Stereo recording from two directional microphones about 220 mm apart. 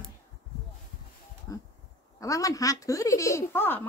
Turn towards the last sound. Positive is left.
turn(degrees=10)  # may be behind; listen again after turning